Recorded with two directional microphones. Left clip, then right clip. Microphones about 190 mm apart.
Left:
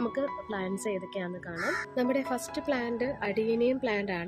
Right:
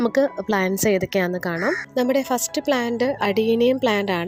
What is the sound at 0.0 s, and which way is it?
A woman's voice, 45° right (ahead or behind).